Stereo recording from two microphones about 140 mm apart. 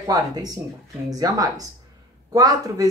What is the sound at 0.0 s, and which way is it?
Speech, 25° right (ahead or behind).